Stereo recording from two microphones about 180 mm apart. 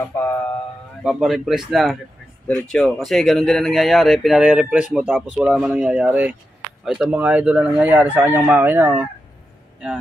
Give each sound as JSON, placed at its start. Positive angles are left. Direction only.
{"t": 0.1, "sound": "speech", "side_deg": 10}
{"t": 1.0, "sound": "speech", "side_deg": 0}
{"t": 6.8, "sound": "chicken", "side_deg": -5}